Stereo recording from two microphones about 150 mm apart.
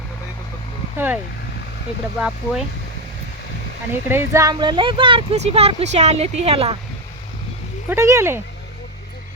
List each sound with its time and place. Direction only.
0.9 s speech: 10° right (ahead or behind)
2.2 s speech: 5° right (ahead or behind)
4.1 s speech: 15° right (ahead or behind)
4.5 s speech: 30° right (ahead or behind)
7.9 s speech: 20° right (ahead or behind)